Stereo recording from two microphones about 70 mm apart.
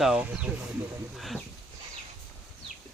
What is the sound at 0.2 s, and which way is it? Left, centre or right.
Speech, centre.